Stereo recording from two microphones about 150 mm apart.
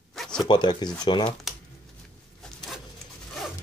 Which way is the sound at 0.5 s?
30° left (ahead or behind).